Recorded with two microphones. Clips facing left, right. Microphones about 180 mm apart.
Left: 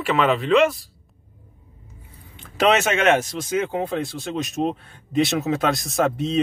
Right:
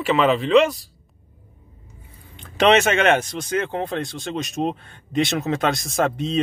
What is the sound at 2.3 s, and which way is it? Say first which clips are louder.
Speech: right 2 dB; 5° left (ahead or behind).